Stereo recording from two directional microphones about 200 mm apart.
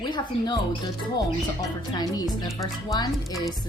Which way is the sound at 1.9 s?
20° left (ahead or behind).